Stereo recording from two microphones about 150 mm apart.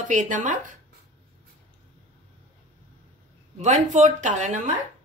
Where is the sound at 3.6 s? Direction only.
55° right (ahead or behind).